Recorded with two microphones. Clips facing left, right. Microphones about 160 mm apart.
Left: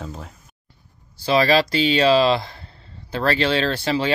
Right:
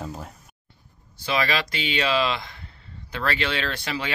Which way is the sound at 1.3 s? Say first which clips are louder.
Left 8 dB; 35° left (ahead or behind).